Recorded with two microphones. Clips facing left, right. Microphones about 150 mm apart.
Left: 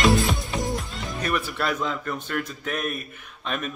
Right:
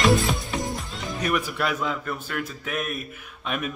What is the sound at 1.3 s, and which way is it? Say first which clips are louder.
A man's voice: even; 10° right (ahead or behind).